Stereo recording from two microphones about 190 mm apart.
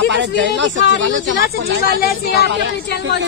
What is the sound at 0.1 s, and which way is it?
Speech, 65° right (ahead or behind).